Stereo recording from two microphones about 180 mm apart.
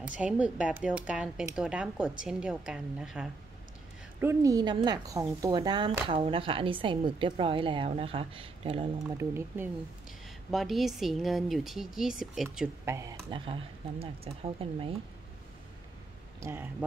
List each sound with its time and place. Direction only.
0.2 s speech: 5° right (ahead or behind)
4.2 s speech: 15° right (ahead or behind)
9.1 s speech: 15° right (ahead or behind)
10.5 s speech: centre (ahead or behind)
12.4 s speech: 15° right (ahead or behind)
13.3 s speech: 30° right (ahead or behind)
16.3 s speech: 15° right (ahead or behind)